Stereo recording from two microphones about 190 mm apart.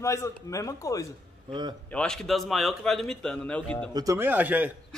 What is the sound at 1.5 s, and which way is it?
Speech, 25° right (ahead or behind).